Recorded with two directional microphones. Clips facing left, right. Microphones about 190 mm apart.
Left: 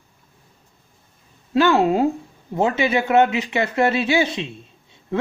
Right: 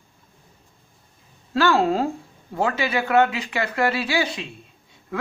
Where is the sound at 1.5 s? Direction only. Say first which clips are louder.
Left 3 dB; 20° left (ahead or behind).